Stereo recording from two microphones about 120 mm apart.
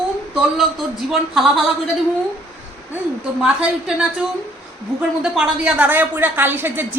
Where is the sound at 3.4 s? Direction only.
5° right (ahead or behind).